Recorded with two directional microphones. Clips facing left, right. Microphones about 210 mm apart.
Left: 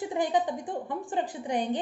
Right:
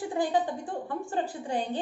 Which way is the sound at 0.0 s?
20° left (ahead or behind).